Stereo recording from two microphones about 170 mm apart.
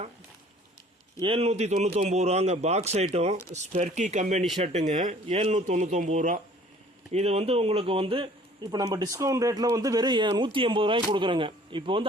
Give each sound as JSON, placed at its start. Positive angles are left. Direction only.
{"t": 1.2, "sound": "a man's voice", "side_deg": -35}